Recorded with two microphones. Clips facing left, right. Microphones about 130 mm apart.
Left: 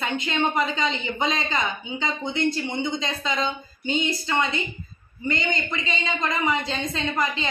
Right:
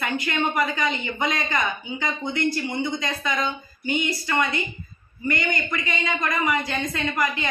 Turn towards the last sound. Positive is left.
turn(degrees=25)  # may be behind; listen again after turning